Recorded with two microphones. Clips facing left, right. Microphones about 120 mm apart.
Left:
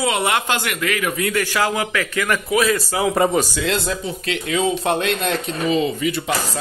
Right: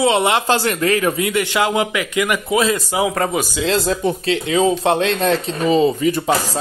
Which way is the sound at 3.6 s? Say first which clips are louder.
Right 4 dB; 35° right (ahead or behind).